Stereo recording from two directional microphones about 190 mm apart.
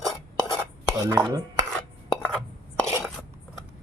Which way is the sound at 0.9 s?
15° right (ahead or behind).